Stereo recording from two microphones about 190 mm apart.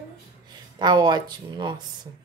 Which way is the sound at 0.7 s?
20° right (ahead or behind).